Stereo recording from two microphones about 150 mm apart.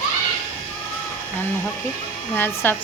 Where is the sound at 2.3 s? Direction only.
15° left (ahead or behind).